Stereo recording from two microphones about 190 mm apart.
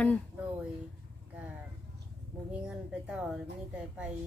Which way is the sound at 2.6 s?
5° right (ahead or behind).